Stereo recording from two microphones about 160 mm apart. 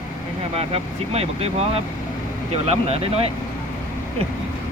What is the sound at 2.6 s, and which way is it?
Speech, 40° right (ahead or behind).